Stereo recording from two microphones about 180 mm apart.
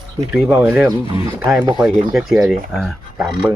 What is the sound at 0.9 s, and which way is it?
Speech, 25° right (ahead or behind).